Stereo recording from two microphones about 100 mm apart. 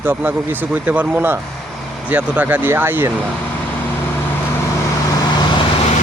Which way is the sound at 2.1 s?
15° right (ahead or behind).